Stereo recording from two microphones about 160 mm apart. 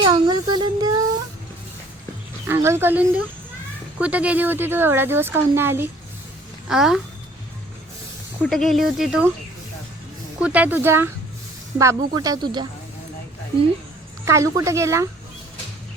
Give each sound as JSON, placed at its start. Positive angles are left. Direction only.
{"t": 0.0, "sound": "a sound", "side_deg": -25}
{"t": 2.5, "sound": "speech", "side_deg": -15}
{"t": 6.7, "sound": "speech", "side_deg": 0}
{"t": 8.4, "sound": "speech", "side_deg": 0}
{"t": 10.4, "sound": "speech", "side_deg": -10}
{"t": 14.3, "sound": "speech", "side_deg": -20}